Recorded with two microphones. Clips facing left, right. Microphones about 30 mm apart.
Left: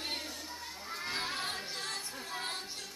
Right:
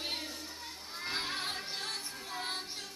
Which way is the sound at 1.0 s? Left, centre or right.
Centre.